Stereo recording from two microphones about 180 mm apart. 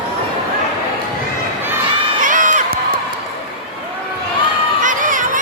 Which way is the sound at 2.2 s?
45° right (ahead or behind).